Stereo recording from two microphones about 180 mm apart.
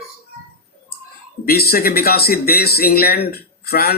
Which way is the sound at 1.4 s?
55° left (ahead or behind).